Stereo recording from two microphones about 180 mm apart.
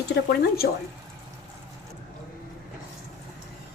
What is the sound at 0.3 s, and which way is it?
Speech, 60° left (ahead or behind).